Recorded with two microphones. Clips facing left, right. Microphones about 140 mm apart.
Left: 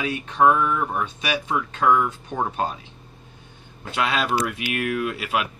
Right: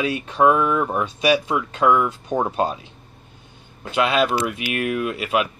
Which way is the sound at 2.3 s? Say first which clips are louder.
Right 5 dB; 40° right (ahead or behind).